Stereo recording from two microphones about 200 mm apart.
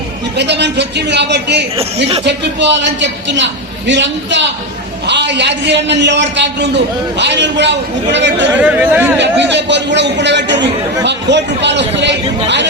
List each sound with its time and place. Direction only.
0.3 s a man's voice: 60° right (ahead or behind)
8.6 s speech: 10° right (ahead or behind)
9.1 s a man's voice: 60° right (ahead or behind)